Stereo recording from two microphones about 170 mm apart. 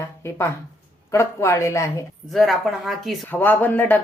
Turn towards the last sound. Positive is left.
turn(degrees=10)  # may be behind; listen again after turning